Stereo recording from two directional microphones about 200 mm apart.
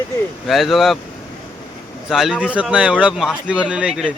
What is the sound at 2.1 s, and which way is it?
Speech, centre (ahead or behind).